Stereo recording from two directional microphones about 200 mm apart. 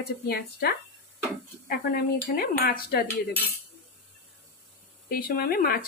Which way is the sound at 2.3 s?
50° left (ahead or behind).